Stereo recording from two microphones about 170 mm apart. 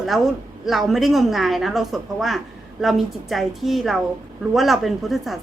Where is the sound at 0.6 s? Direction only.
Centre (ahead or behind).